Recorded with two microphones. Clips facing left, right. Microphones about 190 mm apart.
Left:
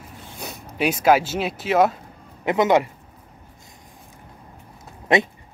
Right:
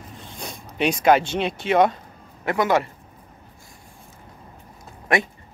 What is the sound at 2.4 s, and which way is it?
Speech, 20° left (ahead or behind).